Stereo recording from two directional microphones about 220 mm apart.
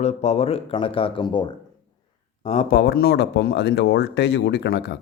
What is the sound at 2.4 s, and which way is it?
Speech, 30° left (ahead or behind).